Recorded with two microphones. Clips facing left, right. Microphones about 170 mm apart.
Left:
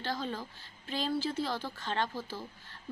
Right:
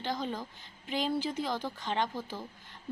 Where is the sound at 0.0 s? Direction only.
15° right (ahead or behind).